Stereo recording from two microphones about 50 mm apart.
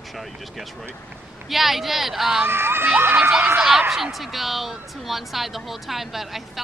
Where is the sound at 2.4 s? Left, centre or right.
Right.